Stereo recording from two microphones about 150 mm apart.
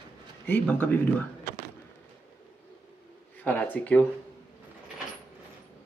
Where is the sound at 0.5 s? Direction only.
10° left (ahead or behind).